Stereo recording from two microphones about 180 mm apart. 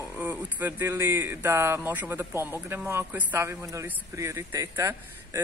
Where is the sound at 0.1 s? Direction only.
10° right (ahead or behind).